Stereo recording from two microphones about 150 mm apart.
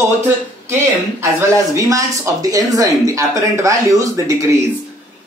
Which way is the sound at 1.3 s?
20° right (ahead or behind).